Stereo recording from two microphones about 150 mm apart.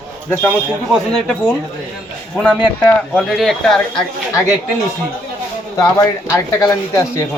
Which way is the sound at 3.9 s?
20° left (ahead or behind).